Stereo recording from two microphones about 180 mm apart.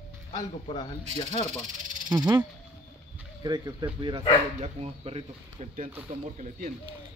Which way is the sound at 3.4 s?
20° right (ahead or behind).